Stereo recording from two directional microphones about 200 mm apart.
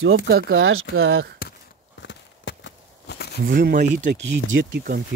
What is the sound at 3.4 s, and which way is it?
Speech, 45° right (ahead or behind).